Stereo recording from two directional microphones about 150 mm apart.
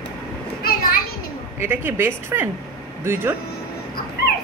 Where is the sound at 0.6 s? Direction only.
80° left.